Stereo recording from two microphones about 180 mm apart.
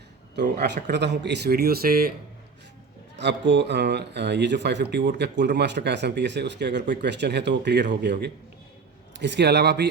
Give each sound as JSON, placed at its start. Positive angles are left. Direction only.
{"t": 0.4, "sound": "speech", "side_deg": -60}
{"t": 3.2, "sound": "speech", "side_deg": -80}